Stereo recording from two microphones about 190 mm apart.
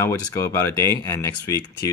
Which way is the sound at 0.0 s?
15° left (ahead or behind).